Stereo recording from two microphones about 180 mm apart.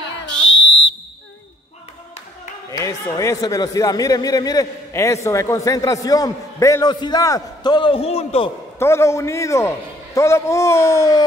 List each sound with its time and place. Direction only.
0.4 s whistle: 90° left
2.7 s a man's voice: 20° left (ahead or behind)
8.7 s a man's voice: 15° left (ahead or behind)